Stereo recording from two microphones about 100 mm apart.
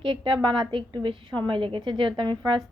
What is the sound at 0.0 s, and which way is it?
A woman's voice, 55° right (ahead or behind).